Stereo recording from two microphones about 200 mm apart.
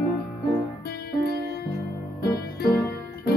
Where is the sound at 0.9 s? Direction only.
50° left (ahead or behind).